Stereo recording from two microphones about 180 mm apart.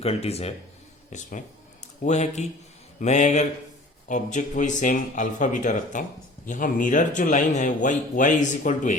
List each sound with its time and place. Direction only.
0.0 s speech: 35° left (ahead or behind)